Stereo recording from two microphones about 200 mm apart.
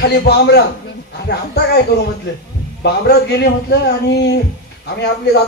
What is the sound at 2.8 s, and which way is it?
Speech, 55° left (ahead or behind).